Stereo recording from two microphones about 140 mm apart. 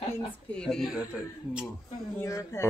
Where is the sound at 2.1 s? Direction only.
20° left (ahead or behind).